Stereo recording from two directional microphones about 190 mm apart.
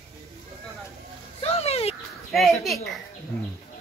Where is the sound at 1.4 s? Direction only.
30° left (ahead or behind).